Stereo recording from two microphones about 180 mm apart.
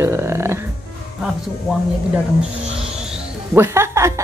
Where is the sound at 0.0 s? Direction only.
15° right (ahead or behind).